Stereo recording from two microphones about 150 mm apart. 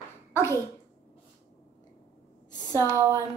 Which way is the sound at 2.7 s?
20° right (ahead or behind).